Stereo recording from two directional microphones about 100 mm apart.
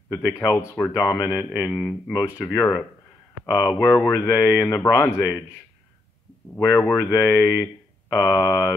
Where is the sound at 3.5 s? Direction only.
40° left (ahead or behind).